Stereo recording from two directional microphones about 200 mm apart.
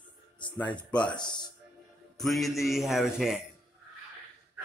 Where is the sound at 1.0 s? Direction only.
20° left (ahead or behind).